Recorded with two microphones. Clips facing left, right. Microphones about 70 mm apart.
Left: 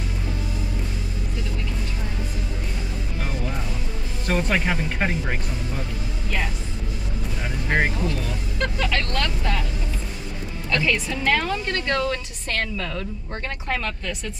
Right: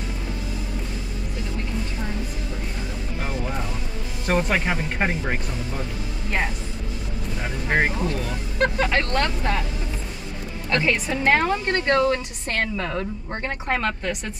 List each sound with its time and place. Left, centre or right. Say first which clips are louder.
4.3 s speech: right 1 dB; centre
7.4 s speech: right 1 dB; centre
8.5 s a woman's voice: right 4 dB; right
10.7 s a woman's voice: right 1 dB; right